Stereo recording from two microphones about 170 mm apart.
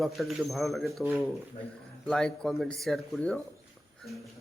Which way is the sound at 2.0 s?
5° left (ahead or behind).